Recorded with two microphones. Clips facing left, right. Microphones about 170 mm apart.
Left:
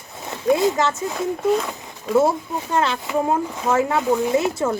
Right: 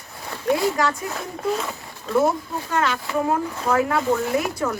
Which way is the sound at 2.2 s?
30° left (ahead or behind).